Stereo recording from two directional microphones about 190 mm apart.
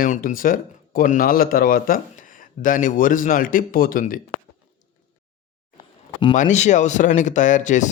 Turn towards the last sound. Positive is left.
turn(degrees=40)  # may be behind; listen again after turning